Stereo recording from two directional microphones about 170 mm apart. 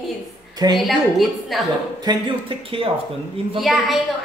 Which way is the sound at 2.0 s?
25° right (ahead or behind).